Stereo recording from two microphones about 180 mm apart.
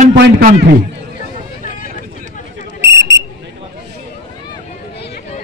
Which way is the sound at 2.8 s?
85° right.